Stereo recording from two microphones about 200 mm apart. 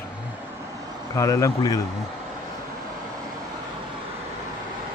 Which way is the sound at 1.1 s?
15° left (ahead or behind).